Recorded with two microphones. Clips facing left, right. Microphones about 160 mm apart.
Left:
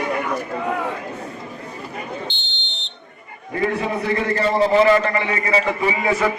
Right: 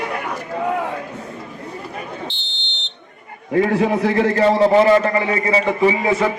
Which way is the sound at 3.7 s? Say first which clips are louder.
Right 5 dB; 75° right (ahead or behind).